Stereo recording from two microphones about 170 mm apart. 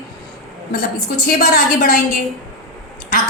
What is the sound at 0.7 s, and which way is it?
A woman's voice, 65° left (ahead or behind).